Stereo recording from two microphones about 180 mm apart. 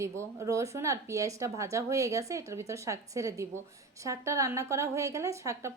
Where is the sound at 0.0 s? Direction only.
15° right (ahead or behind).